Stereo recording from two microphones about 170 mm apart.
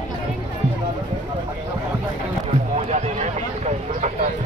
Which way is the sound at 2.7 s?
40° right (ahead or behind).